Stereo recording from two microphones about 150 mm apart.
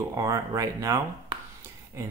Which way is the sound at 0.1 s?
20° right (ahead or behind).